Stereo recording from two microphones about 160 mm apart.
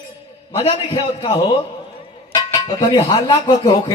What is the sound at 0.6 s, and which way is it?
Speech, 35° left (ahead or behind).